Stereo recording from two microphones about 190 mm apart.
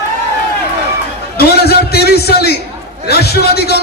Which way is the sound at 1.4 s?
55° left (ahead or behind).